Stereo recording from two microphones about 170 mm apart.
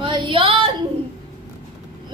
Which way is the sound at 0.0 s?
30° right (ahead or behind).